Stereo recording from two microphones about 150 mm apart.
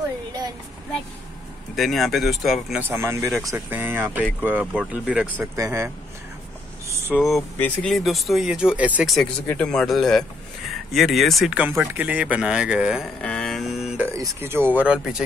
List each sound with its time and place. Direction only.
1.8 s speech: centre (ahead or behind)
2.8 s speech: 15° right (ahead or behind)
5.4 s speech: 20° right (ahead or behind)
7.2 s speech: centre (ahead or behind)
9.1 s speech: 5° left (ahead or behind)
13.2 s a sound: 5° left (ahead or behind)
14.1 s speech: 20° right (ahead or behind)